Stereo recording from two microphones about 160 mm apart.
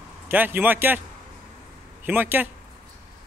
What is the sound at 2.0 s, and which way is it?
Speech, 10° right (ahead or behind).